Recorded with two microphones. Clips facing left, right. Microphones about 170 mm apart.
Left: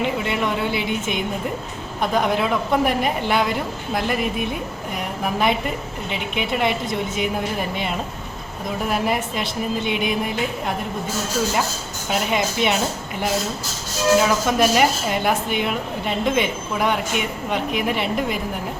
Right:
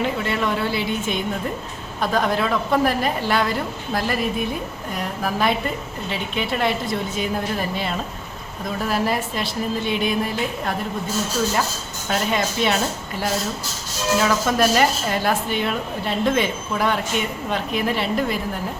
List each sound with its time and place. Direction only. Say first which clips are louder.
0.0 s a woman's voice: even; 15° left (ahead or behind)
8.8 s a woman's voice: even; 15° left (ahead or behind)
12.0 s a woman's voice: even; 10° left (ahead or behind)
14.2 s a woman's voice: left 1 dB; 10° left (ahead or behind)